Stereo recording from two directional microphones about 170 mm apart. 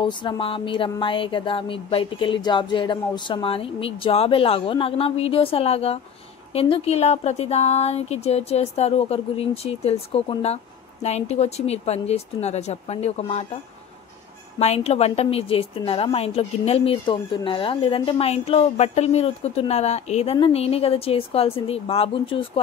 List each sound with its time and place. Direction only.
0.0 s speech: 30° left (ahead or behind)
14.6 s speech: 40° left (ahead or behind)